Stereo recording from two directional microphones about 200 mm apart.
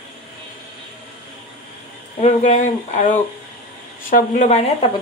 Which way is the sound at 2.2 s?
35° left (ahead or behind).